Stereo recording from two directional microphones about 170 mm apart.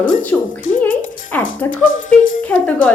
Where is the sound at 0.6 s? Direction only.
50° left (ahead or behind).